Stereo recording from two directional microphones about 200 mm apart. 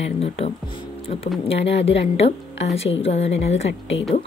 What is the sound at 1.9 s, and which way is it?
A woman's voice, 30° left (ahead or behind).